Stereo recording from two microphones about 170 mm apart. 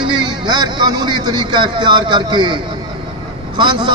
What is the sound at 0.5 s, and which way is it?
A man's voice, 25° right (ahead or behind).